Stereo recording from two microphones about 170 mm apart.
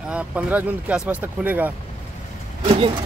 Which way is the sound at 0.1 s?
10° right (ahead or behind).